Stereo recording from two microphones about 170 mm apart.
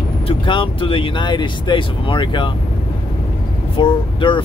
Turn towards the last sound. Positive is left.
turn(degrees=30)  # may be behind; listen again after turning